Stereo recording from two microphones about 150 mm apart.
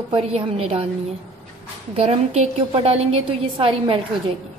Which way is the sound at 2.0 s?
45° right (ahead or behind).